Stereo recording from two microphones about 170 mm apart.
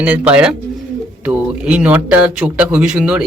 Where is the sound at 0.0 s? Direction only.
10° right (ahead or behind).